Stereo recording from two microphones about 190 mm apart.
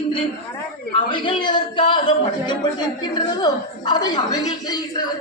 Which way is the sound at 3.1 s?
20° left (ahead or behind).